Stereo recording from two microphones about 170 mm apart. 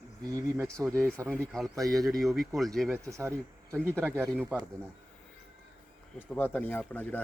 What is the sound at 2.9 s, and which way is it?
Speech, 15° right (ahead or behind).